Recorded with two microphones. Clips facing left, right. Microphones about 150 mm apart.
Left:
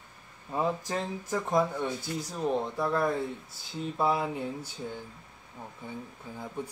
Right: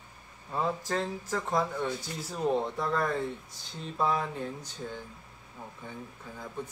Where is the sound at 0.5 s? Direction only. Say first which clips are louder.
Left 1 dB; 15° left (ahead or behind).